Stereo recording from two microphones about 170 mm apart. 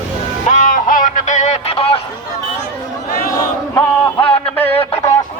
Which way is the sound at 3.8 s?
10° left (ahead or behind).